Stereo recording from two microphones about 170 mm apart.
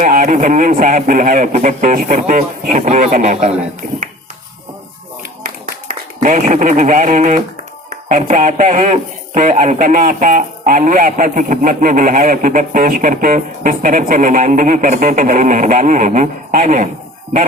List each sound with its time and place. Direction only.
0.0 s speech: 55° right (ahead or behind)
5.9 s a sound: 50° right (ahead or behind)
6.2 s speech: 45° right (ahead or behind)